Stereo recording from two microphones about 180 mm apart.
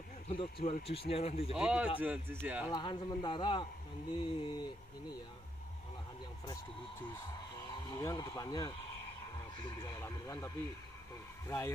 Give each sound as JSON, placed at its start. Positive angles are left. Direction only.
{"t": 0.3, "sound": "speech", "side_deg": 30}
{"t": 1.5, "sound": "a man's voice", "side_deg": -5}
{"t": 2.7, "sound": "a man's voice", "side_deg": 25}
{"t": 8.0, "sound": "a man's voice", "side_deg": 20}